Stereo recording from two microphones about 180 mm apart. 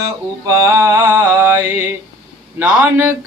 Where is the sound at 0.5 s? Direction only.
15° right (ahead or behind).